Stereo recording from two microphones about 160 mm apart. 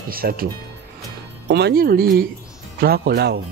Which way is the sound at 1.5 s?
90° right.